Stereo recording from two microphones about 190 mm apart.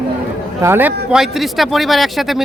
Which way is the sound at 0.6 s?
10° right (ahead or behind).